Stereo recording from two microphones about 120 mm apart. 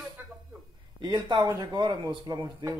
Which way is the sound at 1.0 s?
35° right (ahead or behind).